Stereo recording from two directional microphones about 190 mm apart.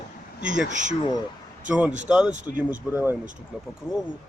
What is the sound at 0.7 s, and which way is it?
Speech, 40° right (ahead or behind).